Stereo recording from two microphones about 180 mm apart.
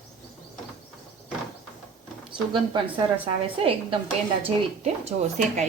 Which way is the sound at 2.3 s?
25° right (ahead or behind).